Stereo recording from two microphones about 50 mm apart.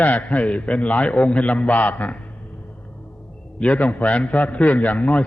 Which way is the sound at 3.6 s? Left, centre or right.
Left.